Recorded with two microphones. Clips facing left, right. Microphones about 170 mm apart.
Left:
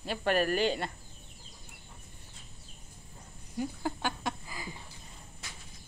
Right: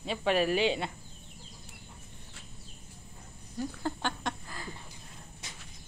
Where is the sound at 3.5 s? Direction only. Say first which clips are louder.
Even; 5° left (ahead or behind).